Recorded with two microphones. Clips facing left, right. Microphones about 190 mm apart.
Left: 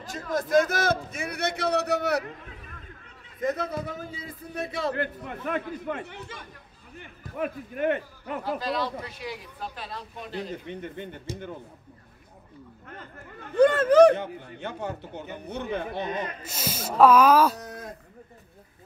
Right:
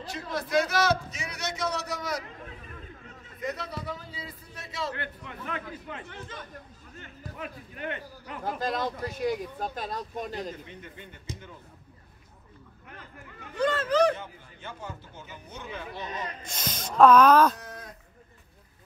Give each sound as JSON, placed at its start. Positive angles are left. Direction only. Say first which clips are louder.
{"t": 0.0, "sound": "speech", "louder": "left 4 dB", "side_deg": 50}
{"t": 3.4, "sound": "a man's voice", "louder": "left 6 dB", "side_deg": 50}
{"t": 6.0, "sound": "speech", "louder": "left 1 dB", "side_deg": 10}
{"t": 7.3, "sound": "a man's voice", "louder": "left 11 dB", "side_deg": 50}
{"t": 8.5, "sound": "speech", "louder": "even", "side_deg": -50}
{"t": 13.6, "sound": "speech", "louder": "left 8 dB", "side_deg": 55}
{"t": 16.4, "sound": "speech", "louder": "left 4 dB", "side_deg": 5}